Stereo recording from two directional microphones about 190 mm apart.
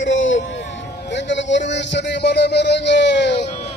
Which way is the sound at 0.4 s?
70° left (ahead or behind).